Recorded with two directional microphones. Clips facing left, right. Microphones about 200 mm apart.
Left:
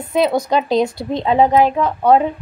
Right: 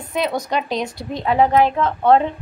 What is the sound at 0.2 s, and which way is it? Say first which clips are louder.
A woman's voice: left 6 dB; 30° left (ahead or behind).